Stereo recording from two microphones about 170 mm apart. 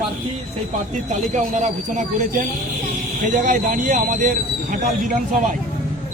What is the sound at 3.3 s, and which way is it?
Speech, 50° right (ahead or behind).